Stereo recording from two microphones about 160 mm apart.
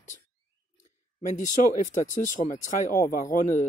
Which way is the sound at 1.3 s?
50° left (ahead or behind).